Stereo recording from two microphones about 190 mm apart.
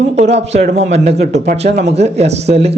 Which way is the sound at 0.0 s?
35° right (ahead or behind).